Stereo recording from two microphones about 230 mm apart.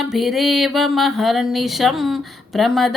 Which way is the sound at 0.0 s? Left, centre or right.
Centre.